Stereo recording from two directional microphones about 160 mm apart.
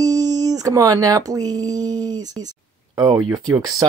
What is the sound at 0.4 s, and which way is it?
Speech, 20° right (ahead or behind).